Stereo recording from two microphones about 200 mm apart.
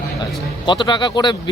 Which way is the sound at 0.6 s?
25° left (ahead or behind).